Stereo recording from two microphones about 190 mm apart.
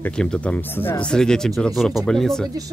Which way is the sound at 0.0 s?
5° left (ahead or behind).